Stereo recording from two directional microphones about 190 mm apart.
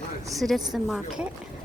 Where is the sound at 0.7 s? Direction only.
Centre (ahead or behind).